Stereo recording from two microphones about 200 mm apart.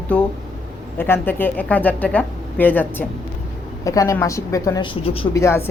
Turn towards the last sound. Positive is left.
turn(degrees=15)  # may be behind; listen again after turning